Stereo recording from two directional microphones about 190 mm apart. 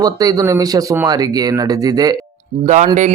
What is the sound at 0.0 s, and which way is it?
A man's voice, 20° right (ahead or behind).